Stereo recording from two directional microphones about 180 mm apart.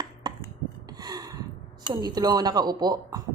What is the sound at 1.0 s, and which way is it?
Gasp, 20° right (ahead or behind).